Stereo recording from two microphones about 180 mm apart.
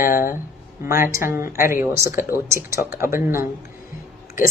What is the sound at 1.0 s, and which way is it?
Speech, 15° right (ahead or behind).